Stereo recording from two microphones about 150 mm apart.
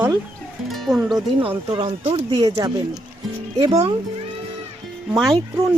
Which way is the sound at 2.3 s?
25° right (ahead or behind).